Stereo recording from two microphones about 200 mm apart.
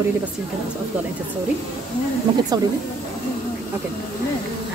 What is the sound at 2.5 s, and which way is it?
Speech, 20° right (ahead or behind).